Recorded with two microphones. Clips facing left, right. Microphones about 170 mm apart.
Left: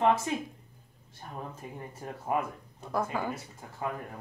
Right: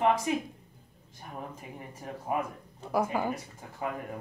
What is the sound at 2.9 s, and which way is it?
Speech, 10° right (ahead or behind).